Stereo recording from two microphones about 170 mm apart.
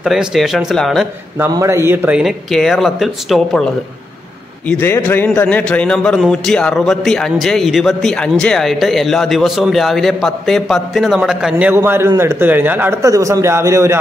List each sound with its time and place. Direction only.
0.0 s a man's voice: 5° right (ahead or behind)
1.4 s a man's voice: 15° right (ahead or behind); by 3.7 s centre (ahead or behind)
4.6 s a man's voice: 10° left (ahead or behind); by 13.9 s 15° right (ahead or behind)